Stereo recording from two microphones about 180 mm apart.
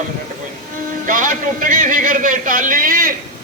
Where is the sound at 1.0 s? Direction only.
45° right (ahead or behind).